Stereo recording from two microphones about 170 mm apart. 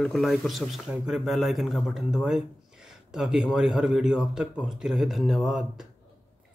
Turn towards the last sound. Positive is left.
turn(degrees=0)  # may be behind; listen again after turning